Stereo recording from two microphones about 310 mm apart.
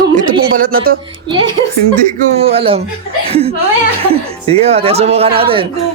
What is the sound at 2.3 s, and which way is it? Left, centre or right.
Speech, centre.